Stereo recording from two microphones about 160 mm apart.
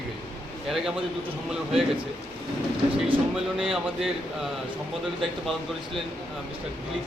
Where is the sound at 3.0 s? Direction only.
35° right (ahead or behind).